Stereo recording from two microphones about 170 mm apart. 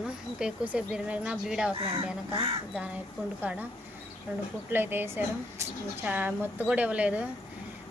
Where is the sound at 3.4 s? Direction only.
10° right (ahead or behind).